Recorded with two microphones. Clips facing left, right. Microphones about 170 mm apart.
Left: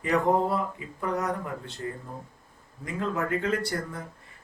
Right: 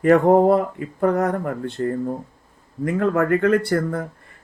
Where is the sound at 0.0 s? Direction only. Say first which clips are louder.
Right 10 dB; 55° right (ahead or behind).